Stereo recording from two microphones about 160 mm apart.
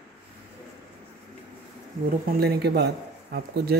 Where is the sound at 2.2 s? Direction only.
80° right.